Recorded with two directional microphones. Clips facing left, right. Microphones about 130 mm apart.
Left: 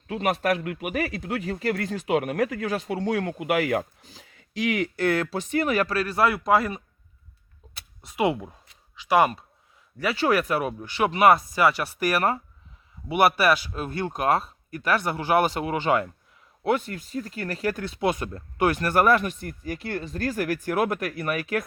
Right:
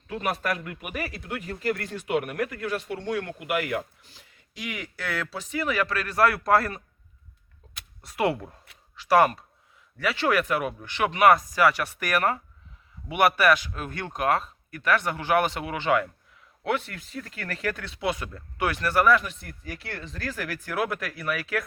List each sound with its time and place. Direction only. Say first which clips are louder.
0.1 s speech: left 4 dB; 75° left (ahead or behind); by 3.6 s 90° left
3.6 s speech: left 5 dB; 40° left (ahead or behind)
4.5 s speech: left 11 dB; 85° left
4.9 s speech: left 8 dB; 55° left (ahead or behind); by 6.8 s 15° left (ahead or behind)
8.0 s speech: left 1 dB; 20° left (ahead or behind)
10.2 s speech: left 2 dB; 35° left (ahead or behind)